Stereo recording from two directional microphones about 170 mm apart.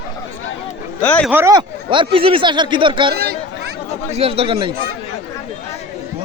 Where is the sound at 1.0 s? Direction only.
10° left (ahead or behind).